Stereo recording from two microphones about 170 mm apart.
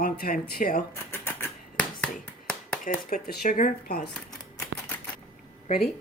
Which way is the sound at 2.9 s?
60° left (ahead or behind).